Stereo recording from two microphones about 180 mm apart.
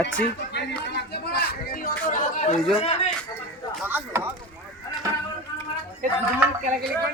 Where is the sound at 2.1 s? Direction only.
45° left (ahead or behind).